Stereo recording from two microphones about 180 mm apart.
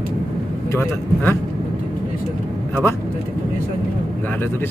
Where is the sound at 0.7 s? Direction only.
15° left (ahead or behind).